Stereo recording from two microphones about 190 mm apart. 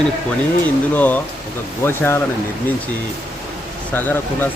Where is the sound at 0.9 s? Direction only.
10° left (ahead or behind).